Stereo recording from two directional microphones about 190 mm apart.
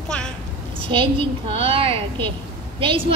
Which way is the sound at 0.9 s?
25° right (ahead or behind).